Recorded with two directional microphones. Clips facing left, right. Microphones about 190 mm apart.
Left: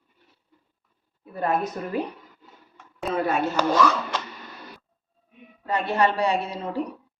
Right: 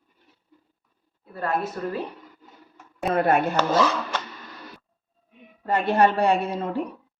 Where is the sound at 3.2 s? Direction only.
55° right (ahead or behind).